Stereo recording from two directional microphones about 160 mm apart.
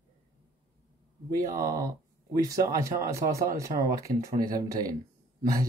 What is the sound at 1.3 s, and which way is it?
Speech, 20° right (ahead or behind).